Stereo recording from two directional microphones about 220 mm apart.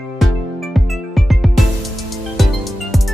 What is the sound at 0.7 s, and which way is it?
Music, centre (ahead or behind).